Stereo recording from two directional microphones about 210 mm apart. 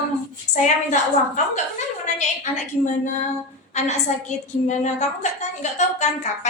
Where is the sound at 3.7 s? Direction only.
35° left (ahead or behind).